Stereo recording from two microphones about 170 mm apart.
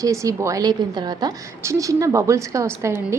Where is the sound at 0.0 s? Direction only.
20° right (ahead or behind).